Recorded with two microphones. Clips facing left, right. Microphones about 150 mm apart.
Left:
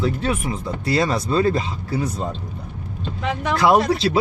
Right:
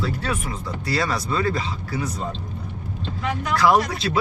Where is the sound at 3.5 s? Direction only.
25° left (ahead or behind).